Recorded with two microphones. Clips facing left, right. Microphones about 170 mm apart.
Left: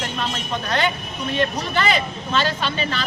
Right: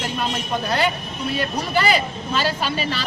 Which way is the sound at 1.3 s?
10° right (ahead or behind).